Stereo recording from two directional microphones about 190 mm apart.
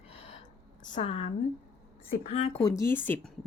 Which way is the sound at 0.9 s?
35° left (ahead or behind).